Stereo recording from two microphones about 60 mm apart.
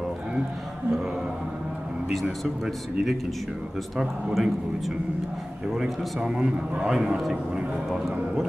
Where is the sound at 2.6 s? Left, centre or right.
Centre.